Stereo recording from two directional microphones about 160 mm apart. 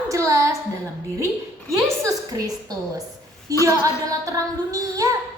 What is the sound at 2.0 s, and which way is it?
A woman's voice, 20° right (ahead or behind).